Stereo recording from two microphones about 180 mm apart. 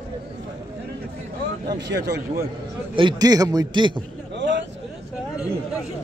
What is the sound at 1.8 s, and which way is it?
Speech, 70° right (ahead or behind).